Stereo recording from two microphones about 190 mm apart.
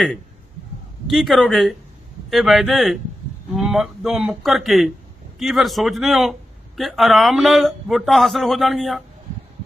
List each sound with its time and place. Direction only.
1.1 s a man's voice: centre (ahead or behind)